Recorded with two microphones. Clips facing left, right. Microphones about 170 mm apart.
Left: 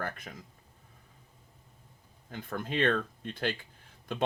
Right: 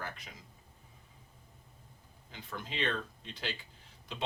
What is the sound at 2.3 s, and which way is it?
Speech, 50° left (ahead or behind).